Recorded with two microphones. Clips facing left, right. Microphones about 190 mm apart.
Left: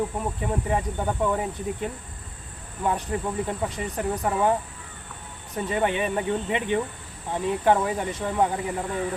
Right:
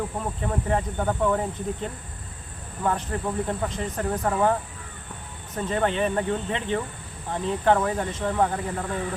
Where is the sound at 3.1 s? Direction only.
10° left (ahead or behind).